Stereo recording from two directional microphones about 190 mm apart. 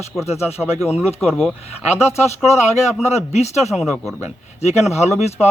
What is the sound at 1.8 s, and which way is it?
Speech, 35° left (ahead or behind).